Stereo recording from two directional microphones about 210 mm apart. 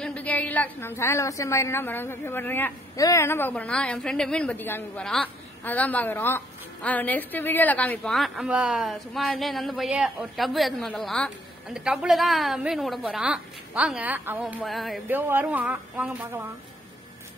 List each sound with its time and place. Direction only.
0.0 s a woman's voice: 5° left (ahead or behind); by 16.4 s 15° right (ahead or behind)